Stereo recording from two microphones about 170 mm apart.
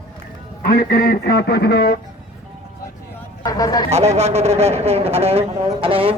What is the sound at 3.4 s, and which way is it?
Speech, 20° left (ahead or behind).